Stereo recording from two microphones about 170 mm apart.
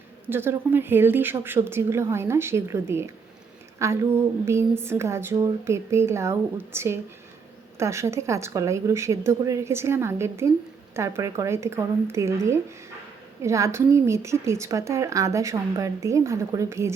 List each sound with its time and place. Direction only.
0.3 s a woman's voice: 15° right (ahead or behind)